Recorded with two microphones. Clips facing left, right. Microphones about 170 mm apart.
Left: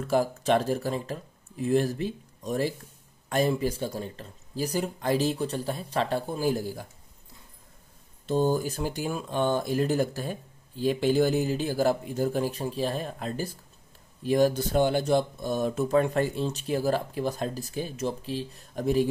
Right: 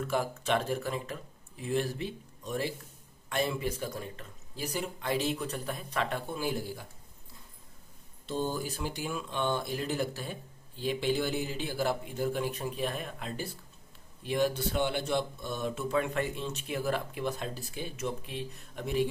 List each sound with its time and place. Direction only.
0.1 s speech: 40° left (ahead or behind)
8.3 s speech: 45° left (ahead or behind)